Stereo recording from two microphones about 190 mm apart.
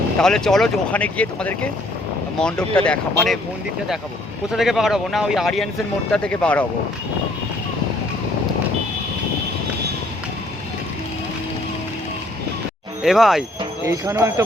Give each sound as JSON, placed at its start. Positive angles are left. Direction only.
{"t": 0.2, "sound": "speech", "side_deg": 5}
{"t": 4.5, "sound": "speech", "side_deg": 0}
{"t": 13.0, "sound": "speech", "side_deg": 0}
{"t": 13.8, "sound": "speech", "side_deg": -15}